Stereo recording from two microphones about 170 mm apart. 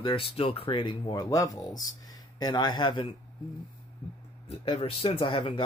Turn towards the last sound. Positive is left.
turn(degrees=30)  # may be behind; listen again after turning